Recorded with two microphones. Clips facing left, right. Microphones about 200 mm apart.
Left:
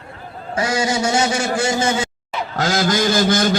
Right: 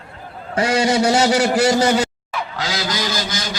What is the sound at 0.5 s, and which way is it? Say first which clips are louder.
A man's voice: right 3 dB; 30° right (ahead or behind).